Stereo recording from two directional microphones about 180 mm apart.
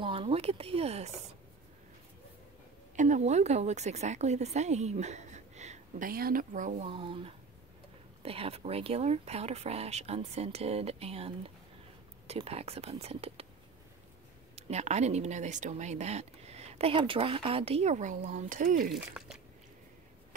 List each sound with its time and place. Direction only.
0.0 s speech: 30° right (ahead or behind)
3.0 s speech: 40° right (ahead or behind)
6.9 s speech: 30° right (ahead or behind)
14.5 s speech: 40° right (ahead or behind)
18.9 s speech: 5° right (ahead or behind)